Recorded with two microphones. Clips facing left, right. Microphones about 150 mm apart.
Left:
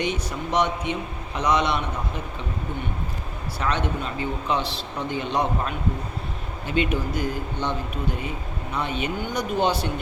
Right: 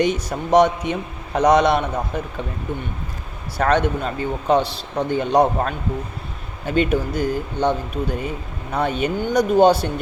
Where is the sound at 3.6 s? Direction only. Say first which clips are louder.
Right 8 dB; 45° right (ahead or behind).